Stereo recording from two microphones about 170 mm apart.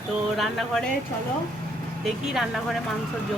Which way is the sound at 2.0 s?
Centre (ahead or behind).